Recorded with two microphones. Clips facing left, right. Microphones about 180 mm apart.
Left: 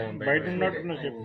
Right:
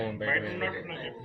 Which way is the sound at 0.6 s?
50° left (ahead or behind).